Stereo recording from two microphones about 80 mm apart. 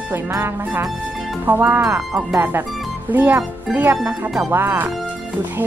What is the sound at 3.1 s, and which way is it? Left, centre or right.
Speech, right.